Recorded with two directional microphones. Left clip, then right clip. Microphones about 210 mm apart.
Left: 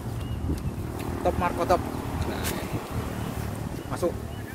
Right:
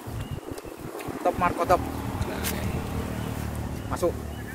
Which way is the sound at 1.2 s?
5° right (ahead or behind).